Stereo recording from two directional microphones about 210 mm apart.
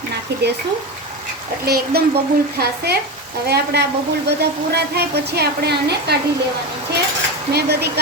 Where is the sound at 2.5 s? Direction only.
50° right (ahead or behind).